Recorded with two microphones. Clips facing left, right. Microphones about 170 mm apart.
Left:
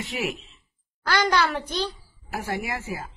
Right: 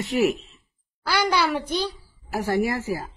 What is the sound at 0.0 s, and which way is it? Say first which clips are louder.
Speech: right 8 dB; 40° right (ahead or behind).